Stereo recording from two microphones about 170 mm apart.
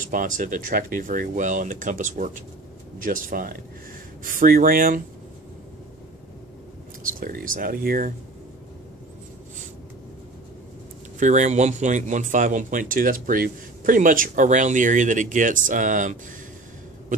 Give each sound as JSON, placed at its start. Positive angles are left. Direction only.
{"t": 0.0, "sound": "speech", "side_deg": -50}
{"t": 7.1, "sound": "speech", "side_deg": -55}
{"t": 11.1, "sound": "speech", "side_deg": -45}